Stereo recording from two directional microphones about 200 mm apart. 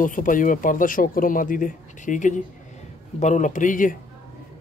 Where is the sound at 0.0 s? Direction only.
40° left (ahead or behind).